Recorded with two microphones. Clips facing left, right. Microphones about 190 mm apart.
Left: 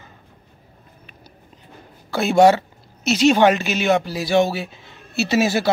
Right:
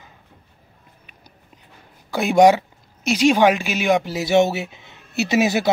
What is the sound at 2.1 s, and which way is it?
A woman's voice, 15° right (ahead or behind).